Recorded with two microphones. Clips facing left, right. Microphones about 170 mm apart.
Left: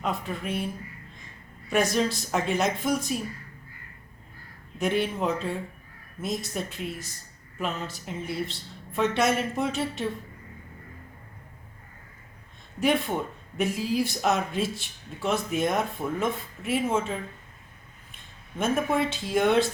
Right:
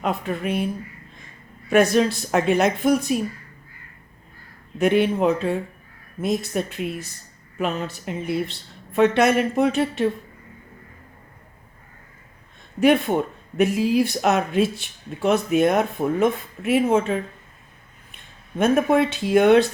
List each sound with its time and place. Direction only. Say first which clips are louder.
0.0 s speech: right 6 dB; 65° right (ahead or behind)
1.7 s speech: right 7 dB; 60° right (ahead or behind)
4.8 s speech: right 8 dB; 65° right (ahead or behind)
12.8 s speech: right 7 dB; 60° right (ahead or behind)